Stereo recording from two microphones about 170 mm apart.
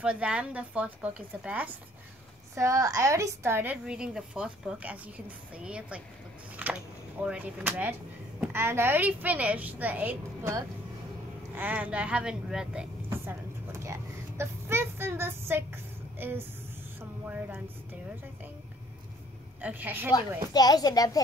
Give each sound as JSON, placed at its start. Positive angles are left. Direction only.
{"t": 0.0, "sound": "a woman's voice", "side_deg": -5}
{"t": 2.5, "sound": "a woman's voice", "side_deg": -20}
{"t": 6.5, "sound": "a sound", "side_deg": -10}
{"t": 7.2, "sound": "a woman's voice", "side_deg": -5}
{"t": 19.6, "sound": "a woman's voice", "side_deg": -10}
{"t": 20.5, "sound": "speech", "side_deg": 25}